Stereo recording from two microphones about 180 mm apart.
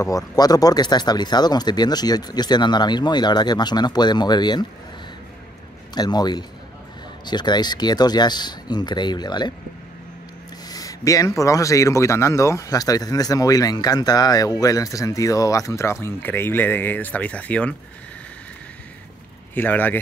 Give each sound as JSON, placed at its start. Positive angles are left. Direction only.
{"t": 0.0, "sound": "speech", "side_deg": 20}
{"t": 5.9, "sound": "speech", "side_deg": 25}
{"t": 10.7, "sound": "speech", "side_deg": 20}
{"t": 19.5, "sound": "speech", "side_deg": 10}